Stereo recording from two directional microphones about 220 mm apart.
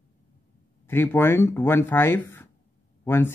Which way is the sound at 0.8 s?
10° left (ahead or behind).